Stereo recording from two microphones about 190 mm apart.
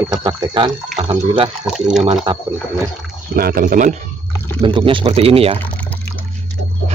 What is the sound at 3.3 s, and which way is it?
Speech, 50° right (ahead or behind).